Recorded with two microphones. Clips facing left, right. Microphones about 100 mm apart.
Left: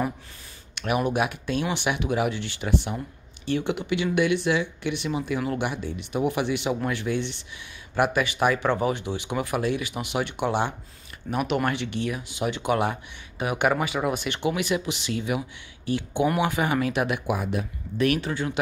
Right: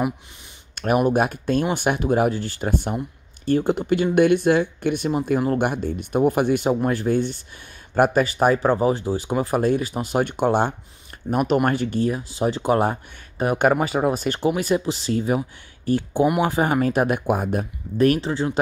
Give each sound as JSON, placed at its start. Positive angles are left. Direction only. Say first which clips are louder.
{"t": 0.7, "sound": "speech", "louder": "right 5 dB", "side_deg": -40}